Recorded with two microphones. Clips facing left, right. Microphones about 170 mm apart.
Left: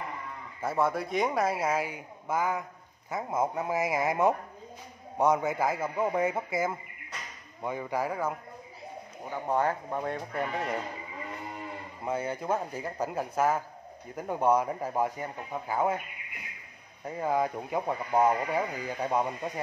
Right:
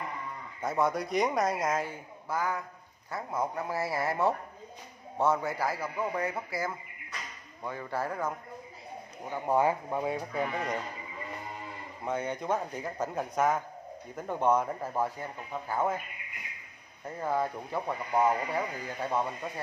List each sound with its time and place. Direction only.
0.6 s a man's voice: 5° left (ahead or behind)
2.2 s a man's voice: 20° left (ahead or behind)
9.3 s speech: 10° right (ahead or behind)
12.0 s a man's voice: 5° left (ahead or behind)
17.0 s speech: 15° left (ahead or behind)